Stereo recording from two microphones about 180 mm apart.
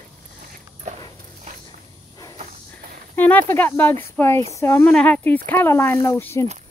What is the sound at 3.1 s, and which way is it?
Speech, 10° left (ahead or behind).